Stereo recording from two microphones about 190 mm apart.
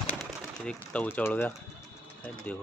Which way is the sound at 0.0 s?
5° left (ahead or behind).